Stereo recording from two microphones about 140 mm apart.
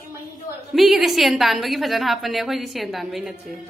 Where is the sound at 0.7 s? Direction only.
Centre (ahead or behind).